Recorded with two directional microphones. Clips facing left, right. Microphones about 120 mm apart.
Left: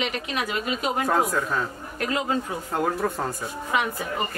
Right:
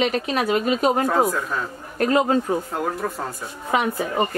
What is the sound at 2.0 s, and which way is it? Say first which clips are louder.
Speech: right 7 dB; 40° right (ahead or behind).